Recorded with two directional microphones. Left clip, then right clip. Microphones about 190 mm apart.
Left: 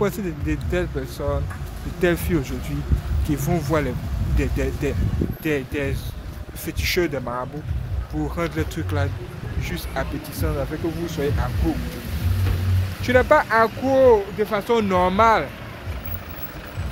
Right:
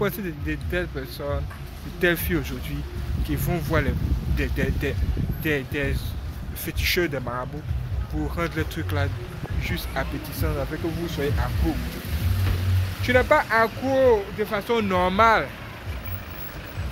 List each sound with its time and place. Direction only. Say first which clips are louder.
0.0 s speech: left 3 dB; 10° left (ahead or behind)
13.0 s speech: left 3 dB; 10° left (ahead or behind)
13.8 s speech: left 6 dB; 25° left (ahead or behind); by 15.4 s 5° left (ahead or behind)